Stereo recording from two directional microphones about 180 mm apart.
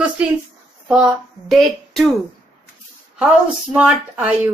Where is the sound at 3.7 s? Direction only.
10° right (ahead or behind).